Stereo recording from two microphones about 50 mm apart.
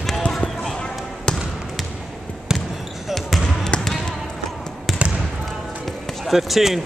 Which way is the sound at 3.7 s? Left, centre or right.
Left.